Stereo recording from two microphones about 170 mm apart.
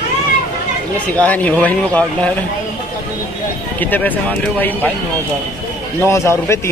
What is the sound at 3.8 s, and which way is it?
Speech, 10° left (ahead or behind).